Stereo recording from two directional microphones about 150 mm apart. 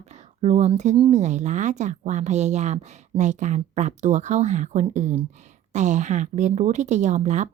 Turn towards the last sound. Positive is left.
turn(degrees=-50)  # may be behind; listen again after turning